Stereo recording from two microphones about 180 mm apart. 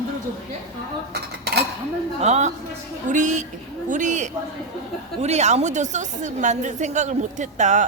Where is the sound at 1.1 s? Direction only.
65° right (ahead or behind).